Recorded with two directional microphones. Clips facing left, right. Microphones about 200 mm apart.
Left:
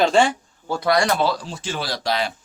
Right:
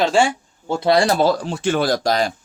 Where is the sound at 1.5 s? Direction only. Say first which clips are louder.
Right 10 dB; 60° right (ahead or behind); by 2.3 s 45° right (ahead or behind).